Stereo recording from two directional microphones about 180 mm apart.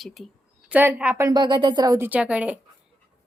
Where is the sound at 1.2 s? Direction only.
25° right (ahead or behind); by 2.6 s 5° right (ahead or behind).